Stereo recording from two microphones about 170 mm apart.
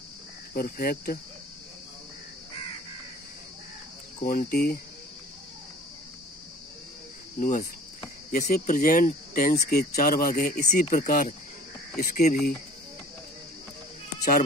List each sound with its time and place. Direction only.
0.6 s speech: 60° left (ahead or behind)
4.2 s speech: 60° left (ahead or behind)
8.3 s speech: 60° left (ahead or behind)